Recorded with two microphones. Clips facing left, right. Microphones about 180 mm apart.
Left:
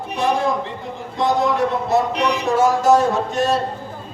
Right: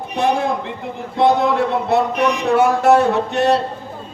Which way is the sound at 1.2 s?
65° right (ahead or behind).